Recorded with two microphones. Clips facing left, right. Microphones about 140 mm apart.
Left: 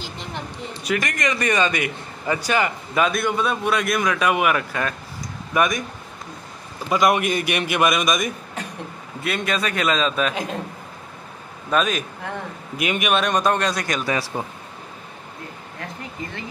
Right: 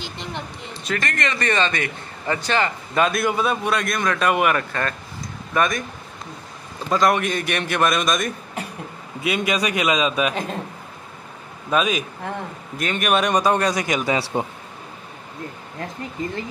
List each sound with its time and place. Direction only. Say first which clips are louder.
0.8 s a man's voice: left 2 dB; 15° left (ahead or behind)
6.9 s a man's voice: even; 15° left (ahead or behind)
9.2 s a man's voice: right 2 dB; 5° right (ahead or behind)
11.7 s a man's voice: even; 5° right (ahead or behind)
12.7 s a man's voice: left 1 dB; 10° left (ahead or behind)
13.1 s a man's voice: right 2 dB; 10° right (ahead or behind)